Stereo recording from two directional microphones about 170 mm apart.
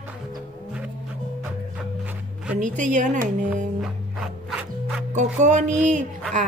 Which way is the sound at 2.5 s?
45° right (ahead or behind).